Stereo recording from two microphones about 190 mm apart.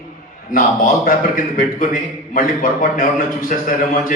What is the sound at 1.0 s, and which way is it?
A man's voice, 45° left (ahead or behind).